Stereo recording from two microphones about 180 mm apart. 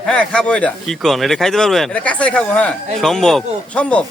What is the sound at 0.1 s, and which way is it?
Speech, 5° left (ahead or behind).